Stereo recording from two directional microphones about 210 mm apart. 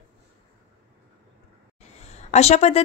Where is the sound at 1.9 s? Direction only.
30° left (ahead or behind).